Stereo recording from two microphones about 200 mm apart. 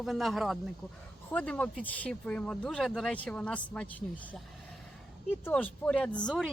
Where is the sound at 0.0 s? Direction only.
Centre (ahead or behind).